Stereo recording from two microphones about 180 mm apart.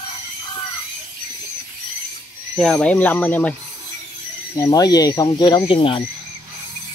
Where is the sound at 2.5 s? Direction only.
Centre (ahead or behind).